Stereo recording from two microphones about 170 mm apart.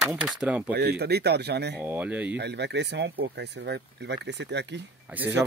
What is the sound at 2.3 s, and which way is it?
Speech, 85° right.